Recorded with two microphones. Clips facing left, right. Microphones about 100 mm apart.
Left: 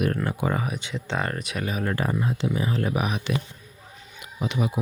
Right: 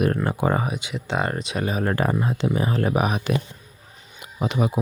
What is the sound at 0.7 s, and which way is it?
Speech, 10° right (ahead or behind).